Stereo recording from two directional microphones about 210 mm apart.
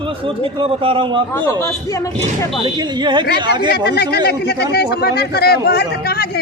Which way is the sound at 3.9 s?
50° left (ahead or behind).